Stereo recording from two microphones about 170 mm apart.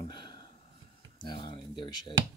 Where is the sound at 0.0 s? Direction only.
25° left (ahead or behind).